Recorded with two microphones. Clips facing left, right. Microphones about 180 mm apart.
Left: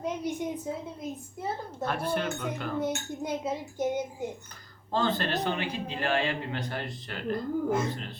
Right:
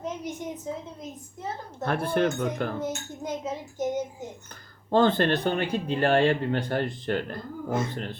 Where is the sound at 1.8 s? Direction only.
55° right (ahead or behind).